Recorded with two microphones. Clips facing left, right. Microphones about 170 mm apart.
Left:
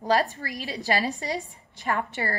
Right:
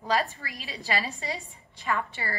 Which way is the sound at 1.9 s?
50° left (ahead or behind).